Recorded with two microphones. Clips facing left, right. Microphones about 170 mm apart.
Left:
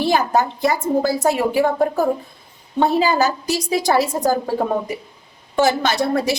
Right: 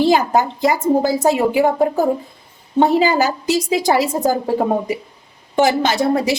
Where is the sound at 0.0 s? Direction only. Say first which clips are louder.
Right 3 dB; 20° right (ahead or behind).